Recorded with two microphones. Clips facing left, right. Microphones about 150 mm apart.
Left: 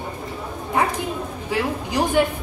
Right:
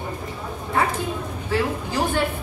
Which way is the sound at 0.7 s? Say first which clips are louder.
Left 1 dB; 15° left (ahead or behind).